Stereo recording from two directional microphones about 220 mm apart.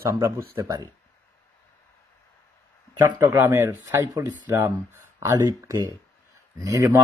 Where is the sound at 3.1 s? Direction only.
10° right (ahead or behind).